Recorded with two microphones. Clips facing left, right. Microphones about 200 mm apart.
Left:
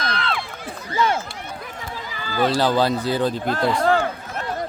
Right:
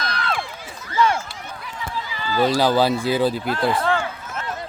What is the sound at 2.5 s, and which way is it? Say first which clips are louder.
Speech: right 1 dB; 5° right (ahead or behind).